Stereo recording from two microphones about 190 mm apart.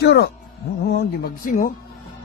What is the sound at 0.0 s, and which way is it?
Speech, 60° left (ahead or behind).